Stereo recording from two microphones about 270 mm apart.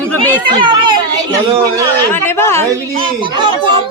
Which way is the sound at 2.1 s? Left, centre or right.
Centre.